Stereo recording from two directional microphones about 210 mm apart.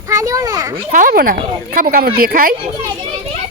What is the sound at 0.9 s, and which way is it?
Speech, 40° right (ahead or behind).